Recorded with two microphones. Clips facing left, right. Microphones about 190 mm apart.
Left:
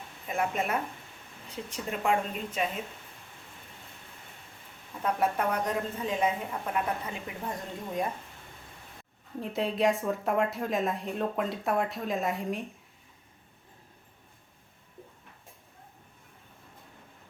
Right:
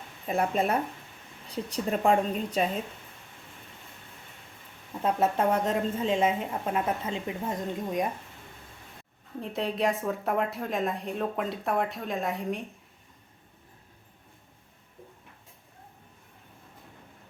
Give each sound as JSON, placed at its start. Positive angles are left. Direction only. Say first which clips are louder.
{"t": 0.3, "sound": "a woman's voice", "louder": "right 4 dB", "side_deg": -35}
{"t": 5.0, "sound": "a woman's voice", "louder": "right 3 dB", "side_deg": -25}
{"t": 9.4, "sound": "a woman's voice", "louder": "left 1 dB", "side_deg": 0}